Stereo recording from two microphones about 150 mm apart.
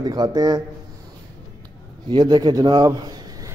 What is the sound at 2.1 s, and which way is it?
Speech, 30° right (ahead or behind).